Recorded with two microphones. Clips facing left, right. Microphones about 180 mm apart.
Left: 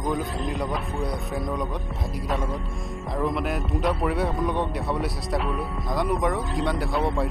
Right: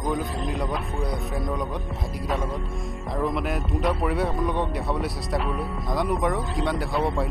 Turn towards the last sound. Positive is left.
turn(degrees=0)  # may be behind; listen again after turning